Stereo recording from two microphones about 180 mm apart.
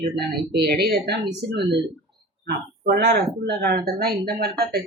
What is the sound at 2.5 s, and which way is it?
Speech, 65° right (ahead or behind).